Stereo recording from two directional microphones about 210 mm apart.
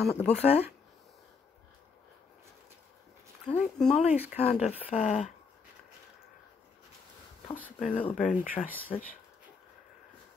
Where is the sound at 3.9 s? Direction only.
30° left (ahead or behind).